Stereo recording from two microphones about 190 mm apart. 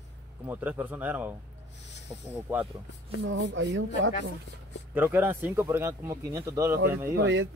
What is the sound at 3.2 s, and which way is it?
Speech, 80° right.